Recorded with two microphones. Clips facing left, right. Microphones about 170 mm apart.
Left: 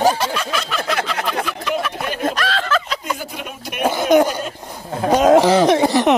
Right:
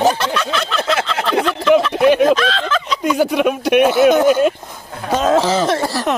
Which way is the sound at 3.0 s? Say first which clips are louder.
Right 12 dB; 75° right (ahead or behind).